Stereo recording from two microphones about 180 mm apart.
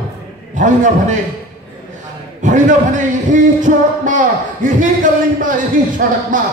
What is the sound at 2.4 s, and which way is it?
Speech, 45° right (ahead or behind).